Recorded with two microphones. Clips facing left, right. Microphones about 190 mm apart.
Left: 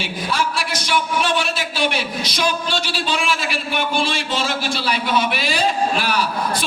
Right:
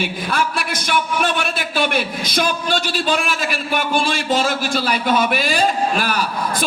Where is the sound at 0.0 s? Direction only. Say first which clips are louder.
Right 2 dB; 55° right (ahead or behind).